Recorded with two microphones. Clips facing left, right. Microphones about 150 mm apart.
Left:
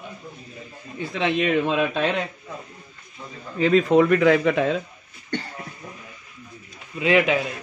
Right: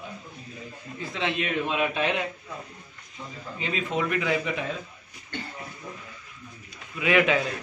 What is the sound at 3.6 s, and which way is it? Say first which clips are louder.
A man's voice: left 12 dB; 45° left (ahead or behind).